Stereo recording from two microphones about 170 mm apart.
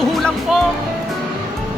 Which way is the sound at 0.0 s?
Centre (ahead or behind).